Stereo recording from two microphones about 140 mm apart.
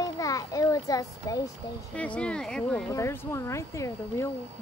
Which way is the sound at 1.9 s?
10° left (ahead or behind).